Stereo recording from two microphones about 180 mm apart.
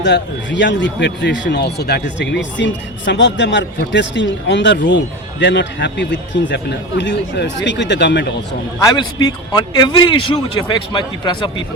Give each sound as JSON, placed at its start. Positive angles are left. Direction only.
{"t": 0.0, "sound": "a man's voice", "side_deg": 80}
{"t": 8.8, "sound": "a man's voice", "side_deg": 20}